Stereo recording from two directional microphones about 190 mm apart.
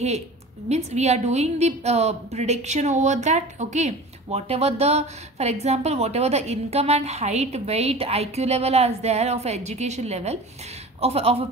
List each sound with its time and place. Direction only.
0.7 s a woman's voice: 35° right (ahead or behind)